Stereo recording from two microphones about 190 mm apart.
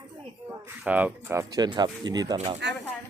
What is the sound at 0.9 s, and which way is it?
Speech, 10° right (ahead or behind).